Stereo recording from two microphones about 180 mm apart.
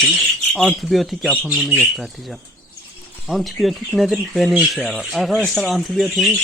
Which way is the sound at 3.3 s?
Centre (ahead or behind).